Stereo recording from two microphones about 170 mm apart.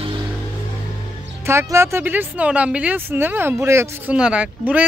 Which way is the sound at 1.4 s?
15° right (ahead or behind).